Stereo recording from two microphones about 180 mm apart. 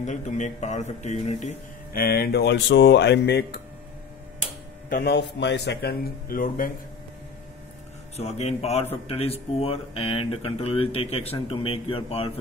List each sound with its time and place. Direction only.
0.0 s speech: 40° left (ahead or behind)
2.0 s speech: 55° left (ahead or behind)
4.8 s a man's voice: 60° left (ahead or behind)
8.2 s speech: 35° left (ahead or behind)